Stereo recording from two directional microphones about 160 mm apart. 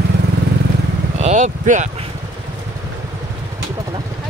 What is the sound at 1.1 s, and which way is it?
Speech, 45° right (ahead or behind).